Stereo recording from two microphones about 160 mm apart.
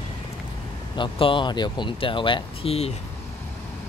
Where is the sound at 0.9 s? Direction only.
30° left (ahead or behind).